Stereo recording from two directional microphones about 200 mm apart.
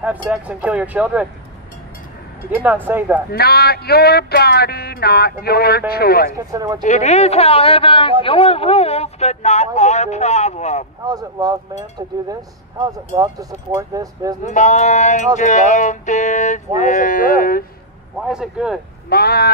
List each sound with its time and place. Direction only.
0.0 s speech: 5° right (ahead or behind)
2.5 s speech: 10° right (ahead or behind)
3.3 s a sound: 50° left (ahead or behind)
6.3 s speech: 20° right (ahead or behind)
6.8 s speech: 35° left (ahead or behind)
11.1 s speech: 20° right (ahead or behind)
14.5 s speech: 35° left (ahead or behind)
18.2 s speech: centre (ahead or behind)
19.0 s a sound: 50° left (ahead or behind)